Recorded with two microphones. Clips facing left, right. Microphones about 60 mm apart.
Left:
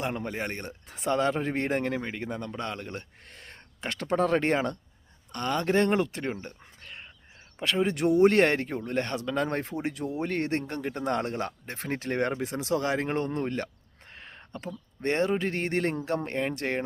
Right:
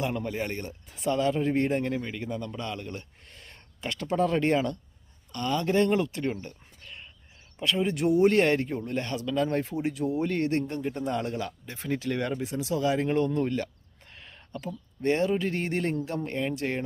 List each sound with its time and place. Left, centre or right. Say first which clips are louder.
0.3 s speech: right 1 dB; left
6.2 s a sound: right 2 dB; left
7.6 s speech: even; left
10.8 s speech: left 1 dB; left
14.1 s a sound: right 1 dB; left
15.0 s speech: right 1 dB; left